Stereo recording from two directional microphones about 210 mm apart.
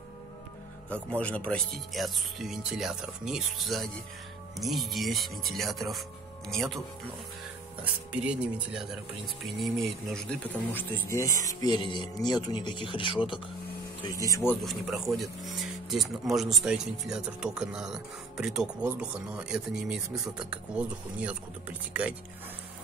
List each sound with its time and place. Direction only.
0.8 s speech: 5° left (ahead or behind)
7.8 s speech: 5° right (ahead or behind)